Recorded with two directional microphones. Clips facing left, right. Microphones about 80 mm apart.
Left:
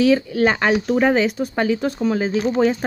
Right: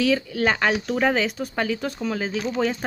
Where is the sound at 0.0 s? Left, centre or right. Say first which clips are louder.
Left 5 dB; left.